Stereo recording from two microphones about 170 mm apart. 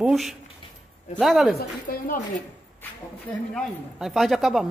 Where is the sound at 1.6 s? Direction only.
55° left (ahead or behind).